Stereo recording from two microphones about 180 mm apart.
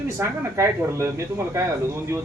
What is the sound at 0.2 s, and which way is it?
Speech, 15° right (ahead or behind).